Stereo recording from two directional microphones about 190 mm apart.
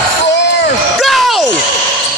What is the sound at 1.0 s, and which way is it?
Basketball bounce, centre (ahead or behind).